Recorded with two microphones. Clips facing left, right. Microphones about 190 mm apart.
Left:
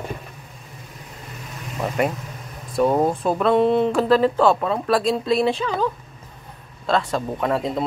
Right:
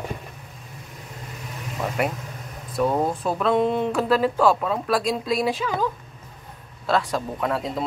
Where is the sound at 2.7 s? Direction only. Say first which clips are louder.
Left 4 dB; 25° left (ahead or behind).